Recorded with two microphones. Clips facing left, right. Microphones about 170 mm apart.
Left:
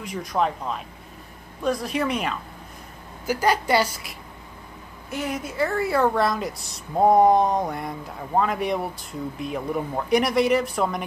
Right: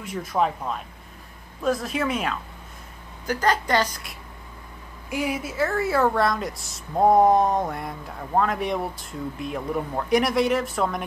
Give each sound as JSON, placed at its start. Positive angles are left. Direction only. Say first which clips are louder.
{"t": 0.0, "sound": "speech", "louder": "even", "side_deg": -5}
{"t": 3.3, "sound": "a woman's voice", "louder": "left 1 dB", "side_deg": 10}
{"t": 5.1, "sound": "speech", "louder": "right 2 dB", "side_deg": -10}